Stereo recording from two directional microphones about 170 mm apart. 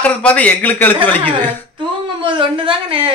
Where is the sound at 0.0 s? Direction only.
10° left (ahead or behind).